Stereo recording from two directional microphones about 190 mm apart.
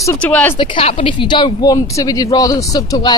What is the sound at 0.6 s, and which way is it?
A woman's voice, 30° left (ahead or behind).